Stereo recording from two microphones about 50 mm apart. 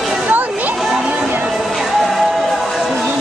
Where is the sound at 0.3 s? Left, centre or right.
Right.